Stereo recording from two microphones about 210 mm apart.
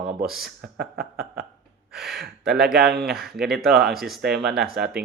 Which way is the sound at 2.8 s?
50° right (ahead or behind).